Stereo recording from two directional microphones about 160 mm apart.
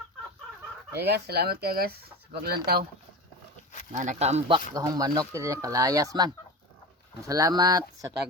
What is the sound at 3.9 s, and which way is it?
Speech, 50° right (ahead or behind).